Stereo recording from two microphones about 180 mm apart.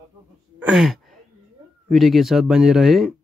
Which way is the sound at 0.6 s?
5° right (ahead or behind).